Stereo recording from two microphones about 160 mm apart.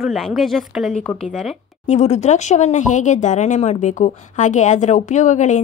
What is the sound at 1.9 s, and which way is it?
Speech, 45° left (ahead or behind).